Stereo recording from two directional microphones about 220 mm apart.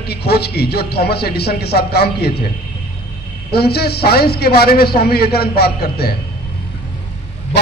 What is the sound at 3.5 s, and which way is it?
A man's voice, 45° left (ahead or behind).